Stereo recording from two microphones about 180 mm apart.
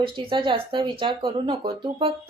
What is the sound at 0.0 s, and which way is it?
Speech, 30° right (ahead or behind).